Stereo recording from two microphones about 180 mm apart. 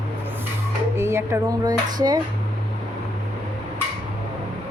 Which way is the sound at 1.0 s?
15° right (ahead or behind).